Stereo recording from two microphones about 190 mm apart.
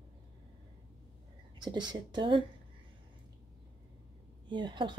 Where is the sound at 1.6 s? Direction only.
25° right (ahead or behind).